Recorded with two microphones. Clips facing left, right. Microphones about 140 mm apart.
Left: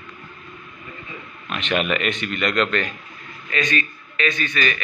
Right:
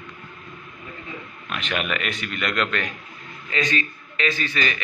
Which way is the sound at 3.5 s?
25° right (ahead or behind).